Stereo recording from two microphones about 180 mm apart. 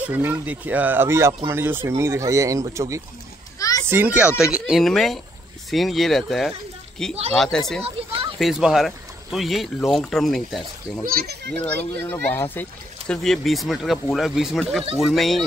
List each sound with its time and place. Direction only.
0.0 s speech: 10° right (ahead or behind)
3.5 s children playing: 20° left (ahead or behind)
3.8 s a child's voice: 10° right (ahead or behind)
7.8 s children playing: 30° right (ahead or behind)
8.4 s speech: centre (ahead or behind)
11.1 s a child's voice: 60° right (ahead or behind)
12.0 s speech: 10° left (ahead or behind)